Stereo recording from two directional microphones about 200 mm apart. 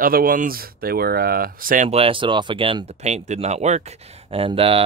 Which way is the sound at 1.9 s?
25° right (ahead or behind).